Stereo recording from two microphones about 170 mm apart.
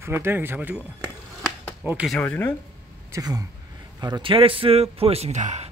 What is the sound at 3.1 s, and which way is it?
A man's voice, 20° right (ahead or behind).